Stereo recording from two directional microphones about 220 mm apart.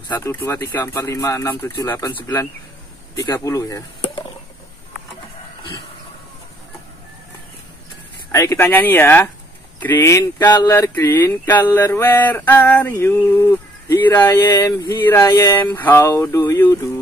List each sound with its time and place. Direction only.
0.1 s speech: 10° left (ahead or behind)
8.3 s speech: 15° left (ahead or behind)